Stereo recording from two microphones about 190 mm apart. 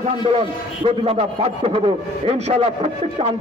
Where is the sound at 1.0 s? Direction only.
30° right (ahead or behind).